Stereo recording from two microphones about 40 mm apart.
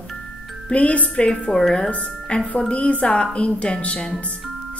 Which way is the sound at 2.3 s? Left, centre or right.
Left.